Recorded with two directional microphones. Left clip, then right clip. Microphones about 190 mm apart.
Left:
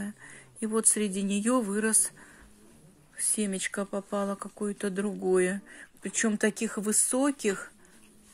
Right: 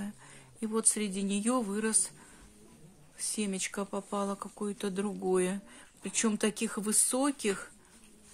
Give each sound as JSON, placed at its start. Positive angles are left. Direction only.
{"t": 0.0, "sound": "speech", "side_deg": 20}
{"t": 3.3, "sound": "speech", "side_deg": 15}